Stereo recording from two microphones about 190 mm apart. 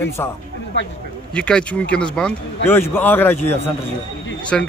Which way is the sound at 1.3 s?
5° left (ahead or behind).